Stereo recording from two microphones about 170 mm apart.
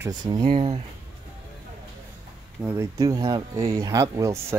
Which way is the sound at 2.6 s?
15° right (ahead or behind).